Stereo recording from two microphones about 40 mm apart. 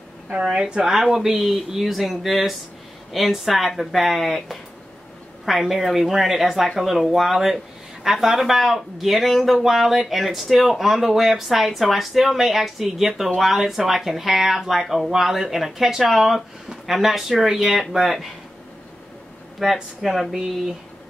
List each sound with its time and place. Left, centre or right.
0.3 s a woman's voice: centre
1.1 s speech: centre
19.6 s speech: centre